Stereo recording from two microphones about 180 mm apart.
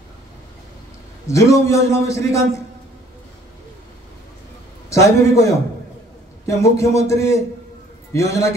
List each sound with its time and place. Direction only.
1.2 s a man's voice: 15° left (ahead or behind)
4.8 s a man's voice: 15° left (ahead or behind)
6.4 s a man's voice: 15° left (ahead or behind)